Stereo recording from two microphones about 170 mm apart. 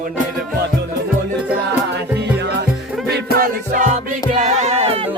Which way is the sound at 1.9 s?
85° right.